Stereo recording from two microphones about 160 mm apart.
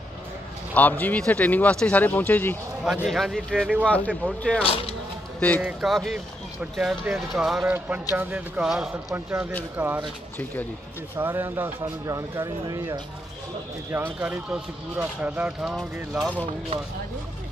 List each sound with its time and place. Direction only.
0.7 s speech: 10° left (ahead or behind)
2.8 s speech: 5° right (ahead or behind)
4.6 s speech: 35° left (ahead or behind)
5.6 s speech: 5° right (ahead or behind)
11.1 s speech: 15° right (ahead or behind)
13.9 s speech: 10° right (ahead or behind)
16.7 s speech: 35° right (ahead or behind)